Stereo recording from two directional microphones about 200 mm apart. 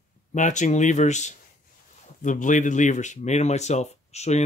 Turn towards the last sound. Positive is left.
turn(degrees=35)  # may be behind; listen again after turning